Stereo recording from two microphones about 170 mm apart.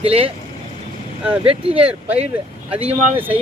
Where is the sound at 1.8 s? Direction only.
5° right (ahead or behind).